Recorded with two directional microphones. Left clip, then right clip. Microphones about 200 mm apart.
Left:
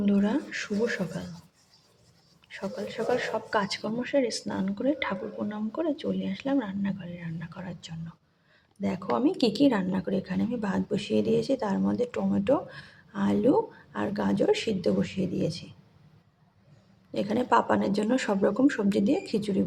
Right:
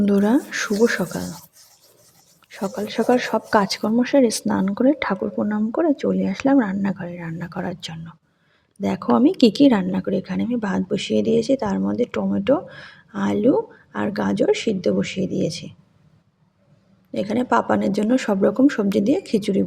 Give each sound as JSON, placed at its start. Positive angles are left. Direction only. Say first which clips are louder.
{"t": 0.0, "sound": "speech", "louder": "right 9 dB", "side_deg": -40}
{"t": 2.6, "sound": "speech", "louder": "right 9 dB", "side_deg": -35}
{"t": 17.1, "sound": "speech", "louder": "right 5 dB", "side_deg": -20}